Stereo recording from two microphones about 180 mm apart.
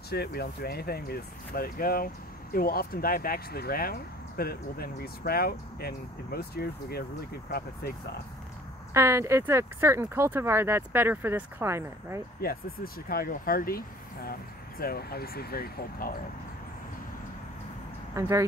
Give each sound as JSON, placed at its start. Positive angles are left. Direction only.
{"t": 0.1, "sound": "speech", "side_deg": 60}
{"t": 8.9, "sound": "speech", "side_deg": -15}
{"t": 12.4, "sound": "speech", "side_deg": 55}
{"t": 18.1, "sound": "speech", "side_deg": -15}